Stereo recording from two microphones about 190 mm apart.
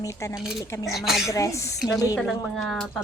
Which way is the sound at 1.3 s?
15° left (ahead or behind).